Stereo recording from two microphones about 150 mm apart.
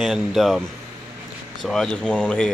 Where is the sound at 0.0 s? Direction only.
Centre (ahead or behind).